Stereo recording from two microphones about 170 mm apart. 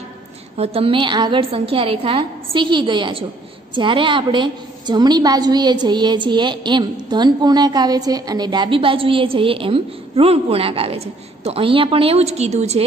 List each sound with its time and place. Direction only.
0.6 s a woman's voice: 35° right (ahead or behind)